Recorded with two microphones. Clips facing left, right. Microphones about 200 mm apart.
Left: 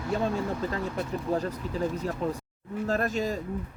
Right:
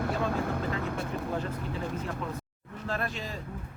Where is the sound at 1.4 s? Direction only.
40° left (ahead or behind).